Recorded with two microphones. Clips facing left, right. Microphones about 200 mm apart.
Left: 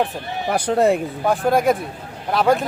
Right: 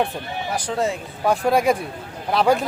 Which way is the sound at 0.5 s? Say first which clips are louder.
Left 7 dB; 60° left (ahead or behind).